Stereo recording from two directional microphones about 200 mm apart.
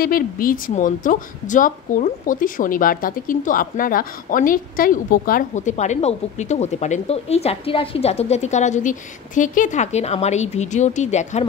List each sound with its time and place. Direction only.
0.0 s a woman's voice: 45° left (ahead or behind)